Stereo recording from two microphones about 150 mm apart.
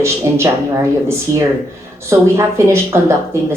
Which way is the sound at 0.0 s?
20° right (ahead or behind).